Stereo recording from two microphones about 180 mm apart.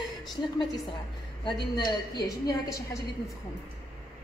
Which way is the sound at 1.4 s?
25° left (ahead or behind).